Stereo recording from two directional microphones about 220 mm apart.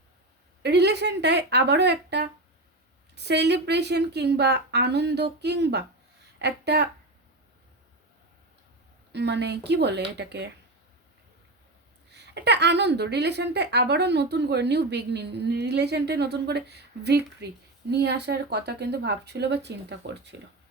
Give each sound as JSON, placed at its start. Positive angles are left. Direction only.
{"t": 0.6, "sound": "a woman's voice", "side_deg": -50}
{"t": 9.1, "sound": "a woman's voice", "side_deg": -50}
{"t": 12.1, "sound": "a woman's voice", "side_deg": -50}